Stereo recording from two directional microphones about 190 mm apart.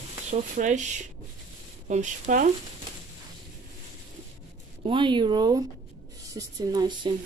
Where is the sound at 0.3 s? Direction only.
40° right (ahead or behind).